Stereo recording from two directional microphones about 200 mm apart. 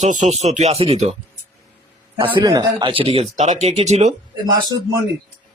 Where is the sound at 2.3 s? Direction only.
20° right (ahead or behind).